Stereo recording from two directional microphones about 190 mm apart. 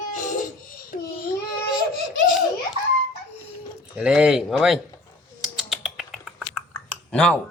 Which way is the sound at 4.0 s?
5° right (ahead or behind).